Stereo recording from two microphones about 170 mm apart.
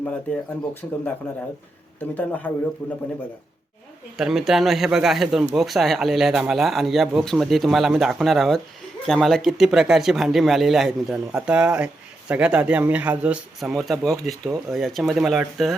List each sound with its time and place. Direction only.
0.0 s speech: 10° left (ahead or behind)
2.1 s speech: 10° left (ahead or behind)
4.2 s speech: centre (ahead or behind)